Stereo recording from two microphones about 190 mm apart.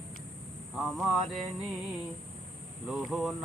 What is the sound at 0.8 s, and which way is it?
Mantra, centre (ahead or behind).